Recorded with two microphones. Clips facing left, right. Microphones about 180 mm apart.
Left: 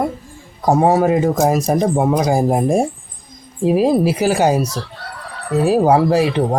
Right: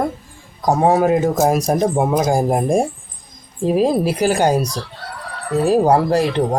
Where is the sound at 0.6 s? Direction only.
5° left (ahead or behind).